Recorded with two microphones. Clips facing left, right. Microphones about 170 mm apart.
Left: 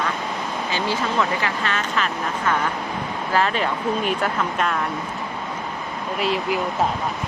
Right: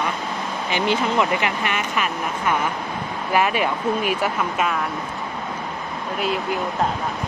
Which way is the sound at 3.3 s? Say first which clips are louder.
Right 1 dB; 10° right (ahead or behind).